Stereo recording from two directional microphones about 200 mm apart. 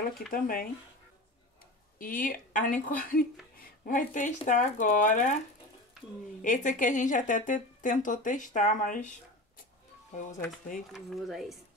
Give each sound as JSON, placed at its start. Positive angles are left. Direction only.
{"t": 0.3, "sound": "a woman's voice", "side_deg": 45}
{"t": 2.0, "sound": "a woman's voice", "side_deg": 40}
{"t": 6.4, "sound": "speech", "side_deg": 40}
{"t": 10.9, "sound": "speech", "side_deg": 0}